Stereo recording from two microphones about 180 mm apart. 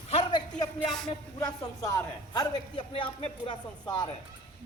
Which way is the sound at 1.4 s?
20° left (ahead or behind).